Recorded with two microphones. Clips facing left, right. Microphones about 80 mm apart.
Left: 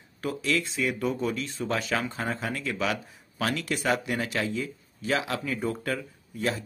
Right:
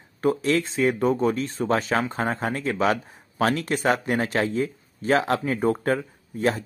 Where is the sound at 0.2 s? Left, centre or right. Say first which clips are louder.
Right 7 dB; right.